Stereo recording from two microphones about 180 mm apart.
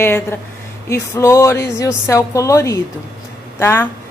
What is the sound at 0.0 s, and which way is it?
A woman's voice, 10° left (ahead or behind).